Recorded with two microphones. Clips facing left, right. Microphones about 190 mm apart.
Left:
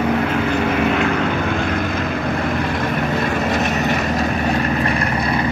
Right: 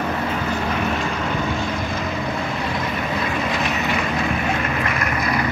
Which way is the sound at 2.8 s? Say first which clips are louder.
Left 5 dB; 45° left (ahead or behind).